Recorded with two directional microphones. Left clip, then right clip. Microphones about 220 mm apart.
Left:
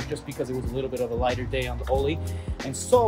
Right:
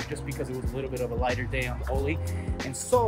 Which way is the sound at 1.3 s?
15° left (ahead or behind).